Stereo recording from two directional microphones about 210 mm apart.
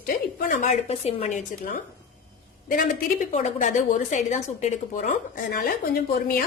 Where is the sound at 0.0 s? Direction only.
40° left (ahead or behind).